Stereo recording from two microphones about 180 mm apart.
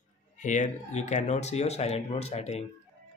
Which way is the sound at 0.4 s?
45° left (ahead or behind).